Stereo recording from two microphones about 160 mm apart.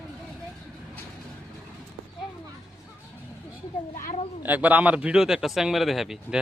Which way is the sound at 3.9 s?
55° left (ahead or behind).